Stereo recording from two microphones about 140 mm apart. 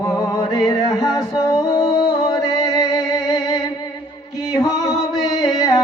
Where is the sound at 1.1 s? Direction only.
25° left (ahead or behind).